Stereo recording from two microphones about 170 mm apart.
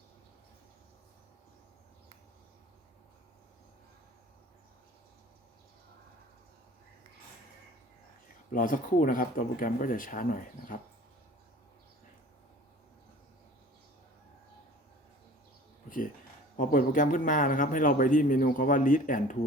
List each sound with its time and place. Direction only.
8.5 s a man's voice: 55° left (ahead or behind)
15.9 s a man's voice: 55° left (ahead or behind)